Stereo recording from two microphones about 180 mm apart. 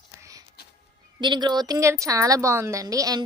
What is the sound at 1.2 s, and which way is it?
A woman's voice, 25° right (ahead or behind).